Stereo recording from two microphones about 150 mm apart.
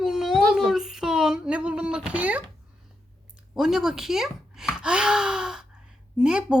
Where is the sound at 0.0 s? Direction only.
Centre (ahead or behind).